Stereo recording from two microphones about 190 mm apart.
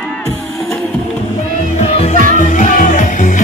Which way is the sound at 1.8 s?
35° left (ahead or behind).